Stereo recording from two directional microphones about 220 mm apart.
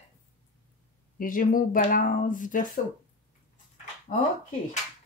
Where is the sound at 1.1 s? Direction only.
40° left (ahead or behind).